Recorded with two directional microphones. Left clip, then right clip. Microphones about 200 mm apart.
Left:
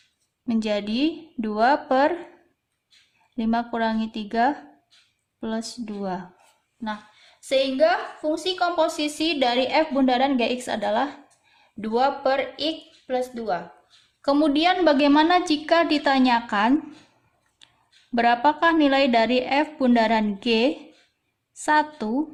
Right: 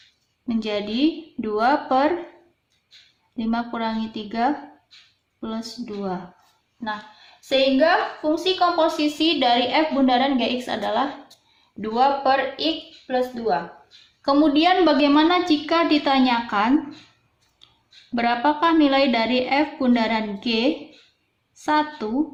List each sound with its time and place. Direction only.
0.4 s a woman's voice: 50° left (ahead or behind)
3.3 s a woman's voice: 50° left (ahead or behind)
7.4 s a woman's voice: 45° left (ahead or behind)
17.6 s a sound: 50° left (ahead or behind)
18.1 s a woman's voice: 50° left (ahead or behind)